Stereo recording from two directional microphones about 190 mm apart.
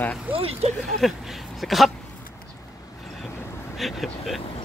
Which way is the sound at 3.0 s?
5° left (ahead or behind).